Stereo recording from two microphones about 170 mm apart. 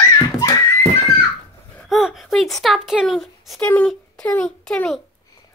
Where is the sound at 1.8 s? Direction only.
Centre (ahead or behind).